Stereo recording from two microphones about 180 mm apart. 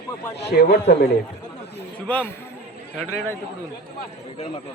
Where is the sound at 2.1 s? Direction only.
10° left (ahead or behind).